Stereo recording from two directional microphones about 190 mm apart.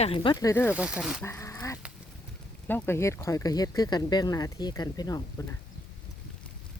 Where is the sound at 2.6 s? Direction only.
10° left (ahead or behind).